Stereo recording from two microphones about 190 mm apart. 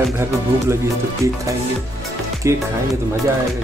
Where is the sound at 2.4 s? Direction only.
15° right (ahead or behind).